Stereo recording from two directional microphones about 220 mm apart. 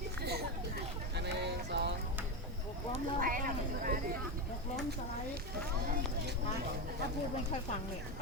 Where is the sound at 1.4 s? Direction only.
50° right (ahead or behind).